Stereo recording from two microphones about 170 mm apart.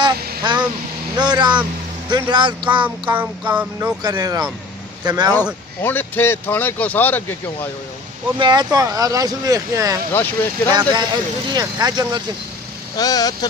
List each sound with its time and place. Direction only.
0.4 s honk: 25° right (ahead or behind)
1.1 s speech: 25° right (ahead or behind)
3.1 s music: 10° right (ahead or behind)
4.0 s speech: 20° right (ahead or behind)
5.3 s speech: 10° left (ahead or behind)
8.4 s speech: 25° right (ahead or behind)
10.1 s speech: 10° left (ahead or behind)
10.7 s speech: 25° right (ahead or behind)
12.9 s speech: 20° left (ahead or behind)